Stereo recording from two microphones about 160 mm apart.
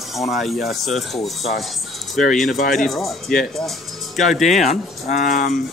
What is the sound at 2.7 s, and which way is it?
Speech, centre (ahead or behind).